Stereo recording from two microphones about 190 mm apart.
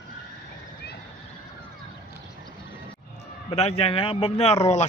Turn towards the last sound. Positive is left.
turn(degrees=35)  # may be behind; listen again after turning